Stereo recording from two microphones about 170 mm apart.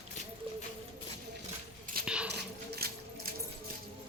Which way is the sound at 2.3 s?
75° right (ahead or behind).